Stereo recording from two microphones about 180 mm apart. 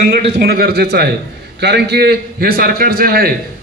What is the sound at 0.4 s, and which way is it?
A man's voice, 60° right (ahead or behind).